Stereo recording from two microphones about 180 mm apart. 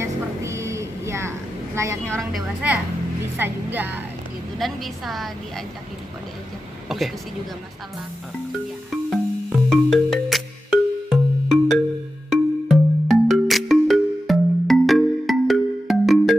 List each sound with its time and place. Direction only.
0.0 s music: 15° right (ahead or behind)
1.8 s speech: 15° right (ahead or behind)
2.1 s a woman's voice: 5° right (ahead or behind)
4.6 s a woman's voice: centre (ahead or behind)
6.9 s a woman's voice: centre (ahead or behind)
8.5 s music: centre (ahead or behind)